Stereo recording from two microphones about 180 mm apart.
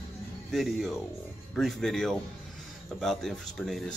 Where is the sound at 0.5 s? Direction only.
Centre (ahead or behind).